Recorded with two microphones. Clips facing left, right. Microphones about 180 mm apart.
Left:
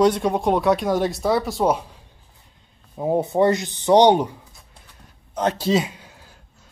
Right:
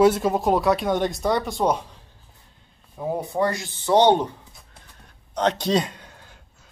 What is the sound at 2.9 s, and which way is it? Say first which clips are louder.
Speech: left 6 dB; 25° left (ahead or behind).